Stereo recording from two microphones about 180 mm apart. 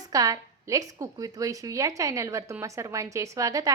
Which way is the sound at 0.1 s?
20° right (ahead or behind).